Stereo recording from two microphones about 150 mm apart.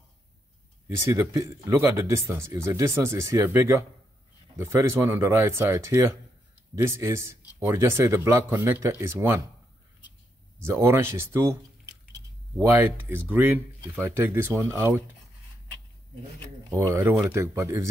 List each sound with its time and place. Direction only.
0.8 s speech: 20° right (ahead or behind)
10.6 s speech: 15° right (ahead or behind)
12.5 s speech: 15° right (ahead or behind)
16.7 s speech: 20° right (ahead or behind)